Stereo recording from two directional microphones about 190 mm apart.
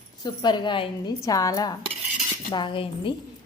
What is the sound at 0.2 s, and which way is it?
A woman's voice, 20° left (ahead or behind).